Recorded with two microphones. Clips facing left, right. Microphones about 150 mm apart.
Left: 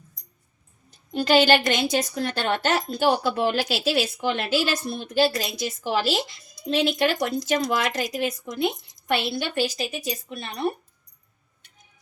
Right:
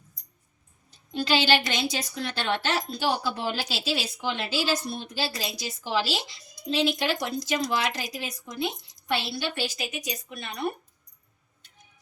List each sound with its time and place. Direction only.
0.9 s a woman's voice: 50° left (ahead or behind); by 10.8 s 30° left (ahead or behind)